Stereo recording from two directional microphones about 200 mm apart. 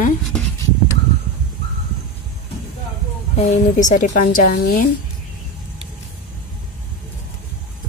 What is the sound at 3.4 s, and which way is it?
A woman's voice, 35° left (ahead or behind).